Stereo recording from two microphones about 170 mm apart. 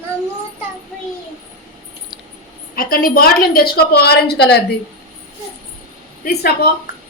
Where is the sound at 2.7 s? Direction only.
60° left (ahead or behind).